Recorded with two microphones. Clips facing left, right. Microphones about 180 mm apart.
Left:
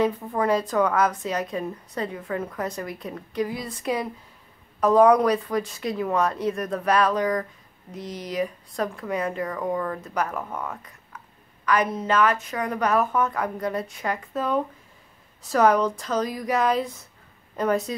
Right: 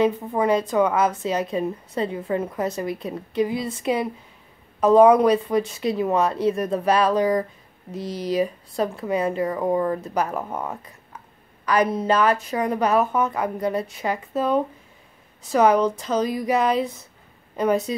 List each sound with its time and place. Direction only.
0.0 s a woman's voice: 20° right (ahead or behind)